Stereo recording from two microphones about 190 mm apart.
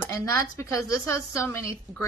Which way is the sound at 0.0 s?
15° left (ahead or behind).